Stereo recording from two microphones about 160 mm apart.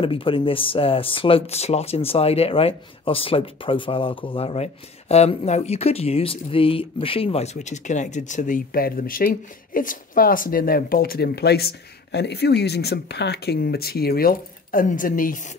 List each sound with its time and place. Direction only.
0.0 s speech: 35° left (ahead or behind); by 15.4 s 60° left (ahead or behind)